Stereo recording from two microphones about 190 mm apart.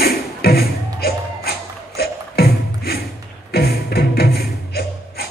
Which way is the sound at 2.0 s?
55° left (ahead or behind).